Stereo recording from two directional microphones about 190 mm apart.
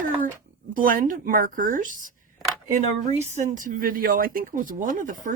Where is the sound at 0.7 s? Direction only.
45° right (ahead or behind).